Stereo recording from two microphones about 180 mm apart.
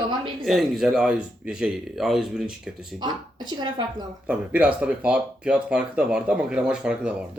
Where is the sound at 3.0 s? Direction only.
25° right (ahead or behind).